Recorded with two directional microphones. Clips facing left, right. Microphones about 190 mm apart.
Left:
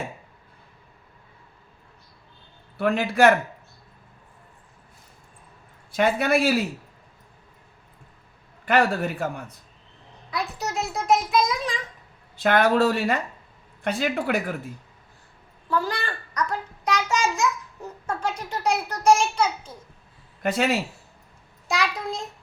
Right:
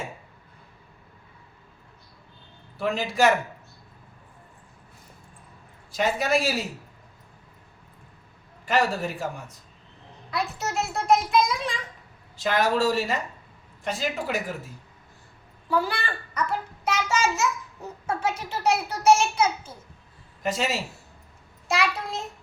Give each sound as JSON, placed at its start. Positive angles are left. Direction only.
{"t": 2.7, "sound": "speech", "side_deg": 60}
{"t": 5.9, "sound": "speech", "side_deg": 60}
{"t": 8.6, "sound": "speech", "side_deg": 60}
{"t": 10.3, "sound": "a child's voice", "side_deg": 0}
{"t": 12.4, "sound": "speech", "side_deg": 60}
{"t": 15.7, "sound": "a child's voice", "side_deg": -10}
{"t": 20.4, "sound": "speech", "side_deg": 60}
{"t": 21.7, "sound": "a child's voice", "side_deg": 0}